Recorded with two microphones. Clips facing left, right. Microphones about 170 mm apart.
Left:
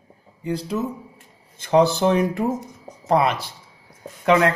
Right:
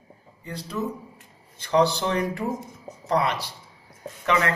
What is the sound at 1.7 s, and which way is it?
Speech, 50° left (ahead or behind).